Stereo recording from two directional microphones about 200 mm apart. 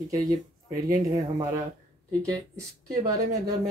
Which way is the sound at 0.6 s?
15° right (ahead or behind).